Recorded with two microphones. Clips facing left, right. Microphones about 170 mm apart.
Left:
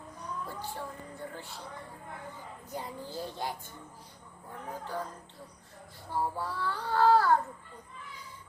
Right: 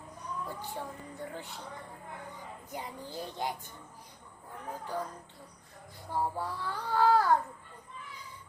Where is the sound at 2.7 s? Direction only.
15° right (ahead or behind).